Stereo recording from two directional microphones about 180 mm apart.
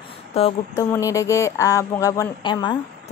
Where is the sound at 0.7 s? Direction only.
15° left (ahead or behind).